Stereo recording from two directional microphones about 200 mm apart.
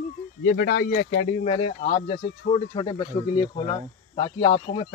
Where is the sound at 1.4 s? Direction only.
30° left (ahead or behind).